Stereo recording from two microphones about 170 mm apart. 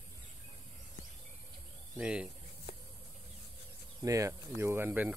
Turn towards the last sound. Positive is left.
turn(degrees=-10)  # may be behind; listen again after turning